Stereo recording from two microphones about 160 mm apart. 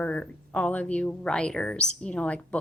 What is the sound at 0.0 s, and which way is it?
Speech, 10° left (ahead or behind).